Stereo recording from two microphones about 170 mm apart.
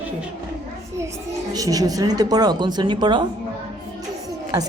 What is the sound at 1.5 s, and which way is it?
A woman's voice, 20° right (ahead or behind).